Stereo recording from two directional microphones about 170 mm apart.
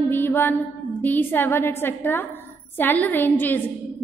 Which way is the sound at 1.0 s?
10° left (ahead or behind).